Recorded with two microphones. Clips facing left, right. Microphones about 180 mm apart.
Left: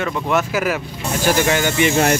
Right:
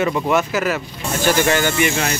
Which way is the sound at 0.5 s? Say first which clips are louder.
Even; 10° left (ahead or behind).